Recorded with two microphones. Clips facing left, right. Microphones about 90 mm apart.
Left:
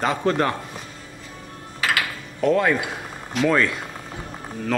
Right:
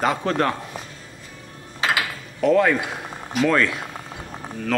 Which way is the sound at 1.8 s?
25° right (ahead or behind).